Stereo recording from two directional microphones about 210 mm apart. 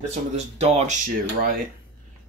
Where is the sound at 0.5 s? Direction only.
30° right (ahead or behind).